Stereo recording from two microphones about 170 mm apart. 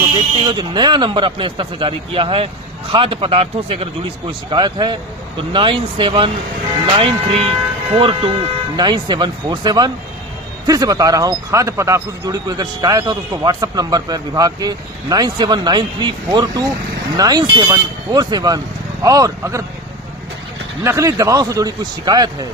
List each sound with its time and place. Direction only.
0.4 s speech: 25° right (ahead or behind)
20.8 s speech: 20° right (ahead or behind)